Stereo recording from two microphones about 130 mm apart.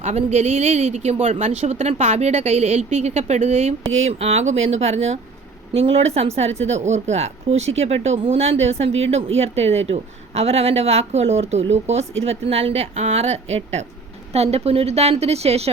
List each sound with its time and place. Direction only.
0.0 s a woman's voice: 60° right (ahead or behind)